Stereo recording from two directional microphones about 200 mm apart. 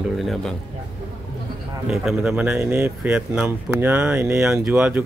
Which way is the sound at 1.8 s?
Centre (ahead or behind).